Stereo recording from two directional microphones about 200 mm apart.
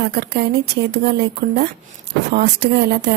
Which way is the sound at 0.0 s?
50° right (ahead or behind).